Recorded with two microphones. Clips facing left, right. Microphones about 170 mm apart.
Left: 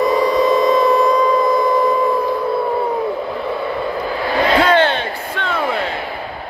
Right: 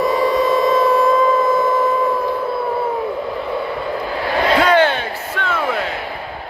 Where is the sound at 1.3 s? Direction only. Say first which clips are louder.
Left 1 dB; 15° left (ahead or behind).